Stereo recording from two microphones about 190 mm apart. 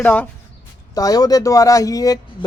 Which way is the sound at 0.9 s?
20° left (ahead or behind).